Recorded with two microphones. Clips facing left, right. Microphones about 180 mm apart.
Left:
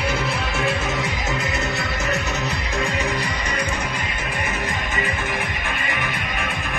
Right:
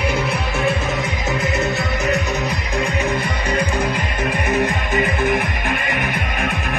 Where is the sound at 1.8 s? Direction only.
15° right (ahead or behind).